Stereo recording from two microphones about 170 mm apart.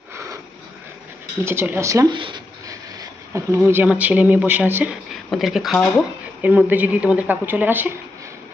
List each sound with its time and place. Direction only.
1.5 s speech: 15° right (ahead or behind)
2.1 s a sound: 25° right (ahead or behind)
3.7 s speech: 10° right (ahead or behind)